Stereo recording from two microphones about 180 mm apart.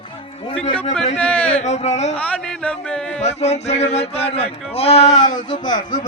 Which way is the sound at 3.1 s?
40° left (ahead or behind).